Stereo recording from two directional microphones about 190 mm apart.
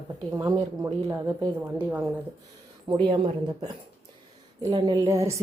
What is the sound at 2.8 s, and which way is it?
Speech, 25° right (ahead or behind).